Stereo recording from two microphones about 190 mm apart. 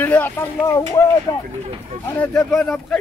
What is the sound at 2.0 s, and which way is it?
Speech, 5° left (ahead or behind).